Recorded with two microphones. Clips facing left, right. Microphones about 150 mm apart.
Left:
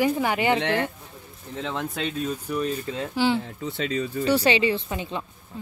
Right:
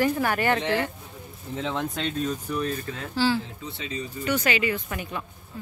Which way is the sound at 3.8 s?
90° left.